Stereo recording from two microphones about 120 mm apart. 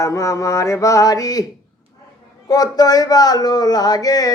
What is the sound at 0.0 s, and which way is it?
Mantra, 25° left (ahead or behind).